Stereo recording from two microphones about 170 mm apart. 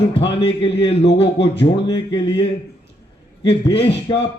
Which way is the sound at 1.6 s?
30° left (ahead or behind).